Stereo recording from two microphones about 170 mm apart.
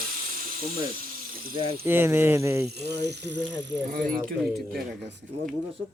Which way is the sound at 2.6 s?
75° right (ahead or behind).